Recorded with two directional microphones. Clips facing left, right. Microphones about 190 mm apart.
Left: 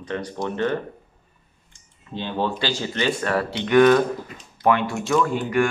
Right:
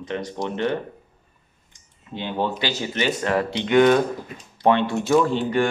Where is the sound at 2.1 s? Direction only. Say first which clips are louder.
Even; 15° right (ahead or behind).